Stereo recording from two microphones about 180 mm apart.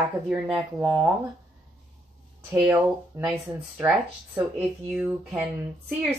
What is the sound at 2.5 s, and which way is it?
Speech, 5° right (ahead or behind).